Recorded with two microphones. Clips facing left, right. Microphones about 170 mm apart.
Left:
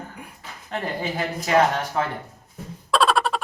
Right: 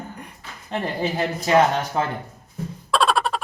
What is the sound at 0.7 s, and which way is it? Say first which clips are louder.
Speech: right 3 dB; 25° right (ahead or behind).